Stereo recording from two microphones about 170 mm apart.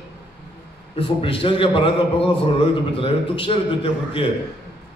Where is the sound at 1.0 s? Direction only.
30° left (ahead or behind).